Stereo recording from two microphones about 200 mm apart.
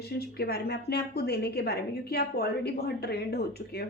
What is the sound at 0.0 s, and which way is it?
A woman's voice, 50° left (ahead or behind).